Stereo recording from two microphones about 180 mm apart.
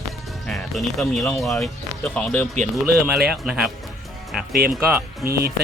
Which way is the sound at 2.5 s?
40° right (ahead or behind).